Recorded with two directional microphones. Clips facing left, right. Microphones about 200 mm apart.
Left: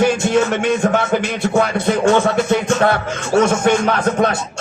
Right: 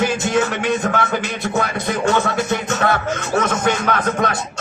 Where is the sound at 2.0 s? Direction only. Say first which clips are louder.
Left 3 dB; 30° left (ahead or behind).